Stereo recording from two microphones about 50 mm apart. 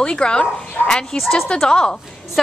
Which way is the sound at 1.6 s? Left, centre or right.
Centre.